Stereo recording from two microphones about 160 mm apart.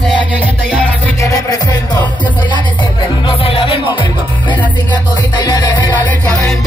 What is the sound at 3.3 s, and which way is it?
Music, 35° left (ahead or behind).